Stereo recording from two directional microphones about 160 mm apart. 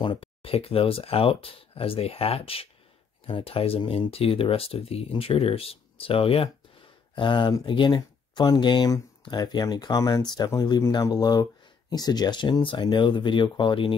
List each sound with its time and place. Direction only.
0.0 s speech: 30° left (ahead or behind)